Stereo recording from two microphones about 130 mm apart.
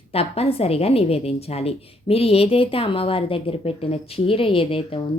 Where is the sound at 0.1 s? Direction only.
50° left (ahead or behind).